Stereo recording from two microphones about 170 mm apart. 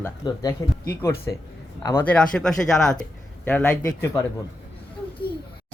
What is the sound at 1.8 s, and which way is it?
Speech, 10° left (ahead or behind).